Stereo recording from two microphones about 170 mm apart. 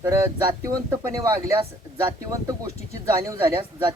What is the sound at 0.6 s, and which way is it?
Speech, 20° right (ahead or behind).